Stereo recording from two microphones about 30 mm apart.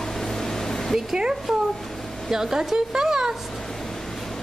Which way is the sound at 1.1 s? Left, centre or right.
Right.